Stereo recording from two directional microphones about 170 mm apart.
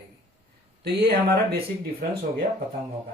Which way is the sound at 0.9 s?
70° right (ahead or behind).